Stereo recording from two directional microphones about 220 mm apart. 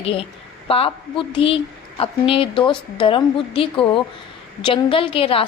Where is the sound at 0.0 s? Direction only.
25° left (ahead or behind).